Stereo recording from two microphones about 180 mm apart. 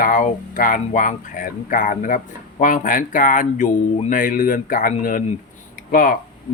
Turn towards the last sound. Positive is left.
turn(degrees=50)  # may be behind; listen again after turning